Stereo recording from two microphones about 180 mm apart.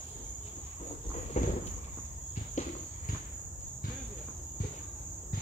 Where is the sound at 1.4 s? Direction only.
40° left (ahead or behind).